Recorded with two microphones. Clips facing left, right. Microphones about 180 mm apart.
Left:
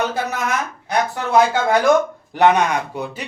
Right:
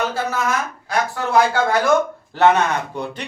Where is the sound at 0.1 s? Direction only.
20° left (ahead or behind).